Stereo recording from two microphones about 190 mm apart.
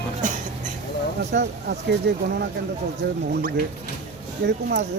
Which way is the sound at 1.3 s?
60° right (ahead or behind).